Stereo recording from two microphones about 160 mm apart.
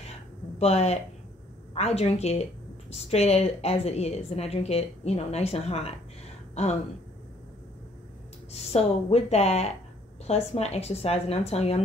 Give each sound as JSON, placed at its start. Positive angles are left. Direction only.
{"t": 0.6, "sound": "a woman's voice", "side_deg": 40}
{"t": 8.5, "sound": "a woman's voice", "side_deg": 40}